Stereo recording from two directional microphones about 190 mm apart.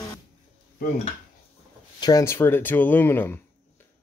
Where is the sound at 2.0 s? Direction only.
15° left (ahead or behind).